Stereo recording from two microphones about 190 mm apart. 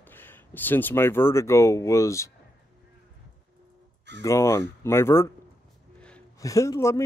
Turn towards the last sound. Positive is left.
turn(degrees=15)  # may be behind; listen again after turning